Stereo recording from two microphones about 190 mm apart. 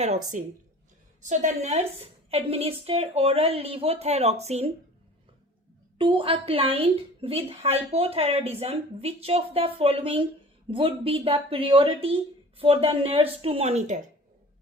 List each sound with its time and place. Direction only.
0.4 s a woman's voice: 40° right (ahead or behind)
6.0 s a woman's voice: 25° right (ahead or behind)